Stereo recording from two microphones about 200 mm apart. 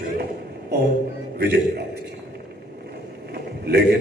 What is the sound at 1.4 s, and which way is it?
Speech, 55° right (ahead or behind).